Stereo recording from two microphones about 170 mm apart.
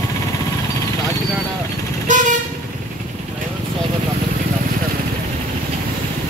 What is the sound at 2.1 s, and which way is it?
Vehicle, 50° right (ahead or behind).